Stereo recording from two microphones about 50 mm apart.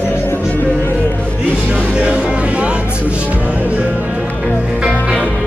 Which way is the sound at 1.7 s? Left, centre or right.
Centre.